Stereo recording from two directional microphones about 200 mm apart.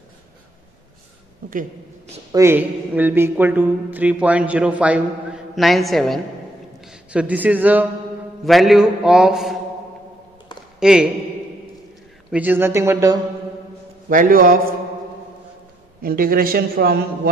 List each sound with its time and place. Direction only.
2.3 s a man's voice: 10° right (ahead or behind)
10.8 s speech: 5° right (ahead or behind)
12.3 s speech: 10° right (ahead or behind)
14.0 s a man's voice: 45° right (ahead or behind)
16.0 s a man's voice: 45° right (ahead or behind)